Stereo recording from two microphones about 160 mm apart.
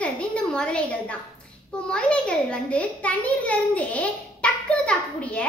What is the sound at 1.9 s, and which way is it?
A child's voice, 5° left (ahead or behind).